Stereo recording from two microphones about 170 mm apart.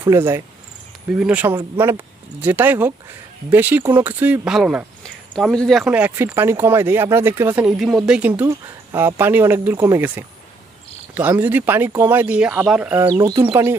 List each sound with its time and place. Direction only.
0.0 s speech: 15° right (ahead or behind)
13.1 s speech: 20° right (ahead or behind)